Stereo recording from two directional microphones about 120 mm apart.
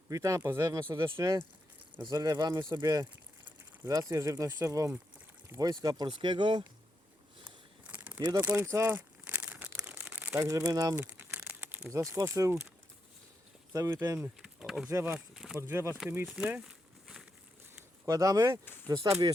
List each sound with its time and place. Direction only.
0.1 s speech: 30° right (ahead or behind)
7.9 s a sound: 10° right (ahead or behind)
8.4 s speech: 20° right (ahead or behind)
9.0 s crumpling: 10° right (ahead or behind)
10.3 s speech: 25° right (ahead or behind)
10.9 s crumpling: 15° right (ahead or behind)
11.9 s speech: 25° right (ahead or behind)
13.7 s speech: 25° right (ahead or behind)
14.2 s speech: 5° right (ahead or behind)
14.8 s speech: 20° right (ahead or behind)
15.3 s speech: centre (ahead or behind)
15.6 s speech: 20° right (ahead or behind)
16.2 s crumpling: 10° right (ahead or behind)
18.0 s speech: 30° right (ahead or behind)